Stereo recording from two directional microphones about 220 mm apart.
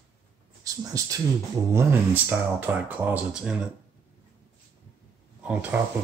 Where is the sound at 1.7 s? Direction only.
10° right (ahead or behind).